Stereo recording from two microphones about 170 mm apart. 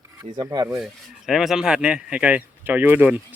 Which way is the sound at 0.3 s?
25° right (ahead or behind).